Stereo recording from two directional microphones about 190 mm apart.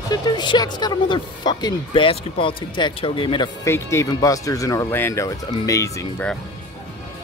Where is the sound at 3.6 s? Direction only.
15° left (ahead or behind).